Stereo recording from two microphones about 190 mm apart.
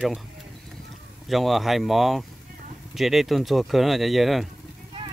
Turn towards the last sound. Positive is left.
turn(degrees=0)  # may be behind; listen again after turning